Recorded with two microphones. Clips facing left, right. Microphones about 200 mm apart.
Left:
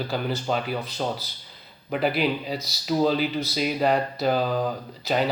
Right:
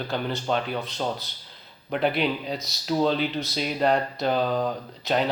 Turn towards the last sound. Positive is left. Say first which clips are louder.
# even
turn(degrees=0)  # may be behind; listen again after turning